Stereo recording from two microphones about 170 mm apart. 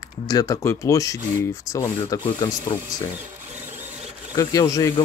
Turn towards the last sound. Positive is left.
turn(degrees=20)  # may be behind; listen again after turning